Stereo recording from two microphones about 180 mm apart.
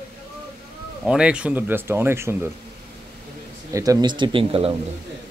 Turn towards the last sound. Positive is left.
turn(degrees=-30)  # may be behind; listen again after turning